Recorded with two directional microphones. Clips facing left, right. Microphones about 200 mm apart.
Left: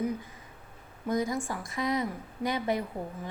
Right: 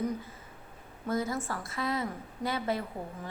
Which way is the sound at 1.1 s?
15° left (ahead or behind).